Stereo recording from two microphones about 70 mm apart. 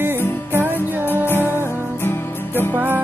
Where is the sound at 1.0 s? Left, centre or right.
Left.